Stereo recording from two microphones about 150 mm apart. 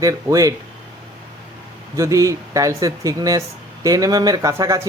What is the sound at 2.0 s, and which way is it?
Speech, 20° right (ahead or behind).